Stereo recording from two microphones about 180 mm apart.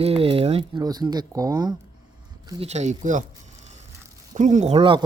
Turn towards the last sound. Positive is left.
turn(degrees=-30)  # may be behind; listen again after turning